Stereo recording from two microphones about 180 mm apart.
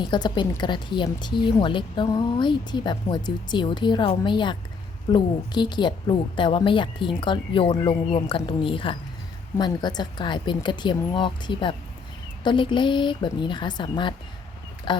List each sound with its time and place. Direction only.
0.0 s a woman's voice: 25° left (ahead or behind)